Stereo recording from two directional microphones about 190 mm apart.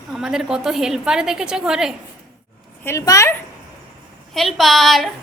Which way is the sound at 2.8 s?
15° left (ahead or behind).